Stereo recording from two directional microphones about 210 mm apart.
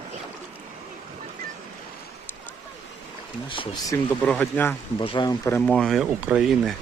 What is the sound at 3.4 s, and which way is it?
Speech, 25° left (ahead or behind).